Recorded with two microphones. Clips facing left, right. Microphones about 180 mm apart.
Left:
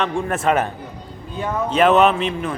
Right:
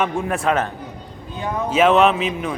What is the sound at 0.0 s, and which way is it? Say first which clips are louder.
Speech: even; centre (ahead or behind).